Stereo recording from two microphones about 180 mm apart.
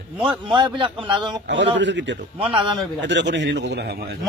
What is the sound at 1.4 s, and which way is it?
A man's voice, 80° right.